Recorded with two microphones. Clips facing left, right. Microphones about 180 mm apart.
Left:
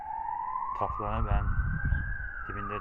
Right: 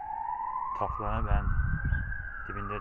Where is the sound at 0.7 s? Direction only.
Centre (ahead or behind).